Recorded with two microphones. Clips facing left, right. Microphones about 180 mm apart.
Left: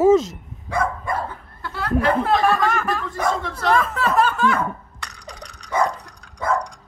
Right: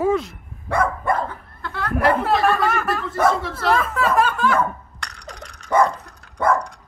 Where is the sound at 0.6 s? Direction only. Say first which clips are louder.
Right 3 dB; 60° right (ahead or behind).